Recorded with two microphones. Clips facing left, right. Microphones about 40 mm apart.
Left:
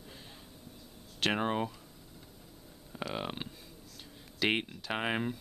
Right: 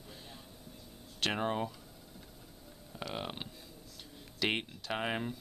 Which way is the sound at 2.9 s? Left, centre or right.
Centre.